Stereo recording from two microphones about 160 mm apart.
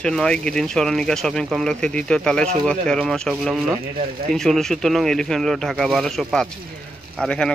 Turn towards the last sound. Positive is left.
turn(degrees=5)  # may be behind; listen again after turning